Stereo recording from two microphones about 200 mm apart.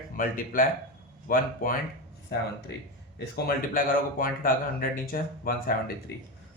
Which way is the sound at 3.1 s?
50° left (ahead or behind).